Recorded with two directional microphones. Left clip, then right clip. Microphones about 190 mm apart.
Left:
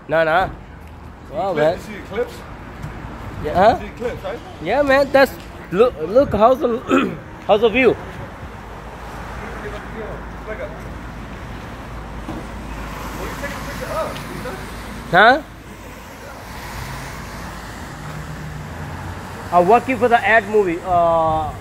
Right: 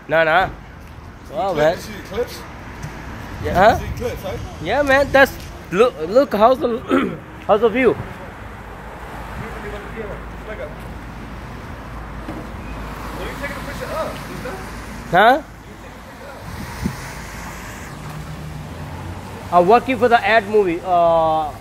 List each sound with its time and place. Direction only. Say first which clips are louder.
0.1 s speech: right 1 dB; 10° right (ahead or behind)
3.4 s speech: right 1 dB; 10° right (ahead or behind)
4.0 s speech: left 2 dB; 35° right (ahead or behind)
4.6 s a man's voice: even; centre (ahead or behind)
15.0 s speech: left 1 dB; 5° right (ahead or behind)
19.5 s speech: even; 25° right (ahead or behind)